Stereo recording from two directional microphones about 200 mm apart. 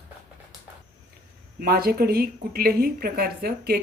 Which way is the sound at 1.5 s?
50° right (ahead or behind).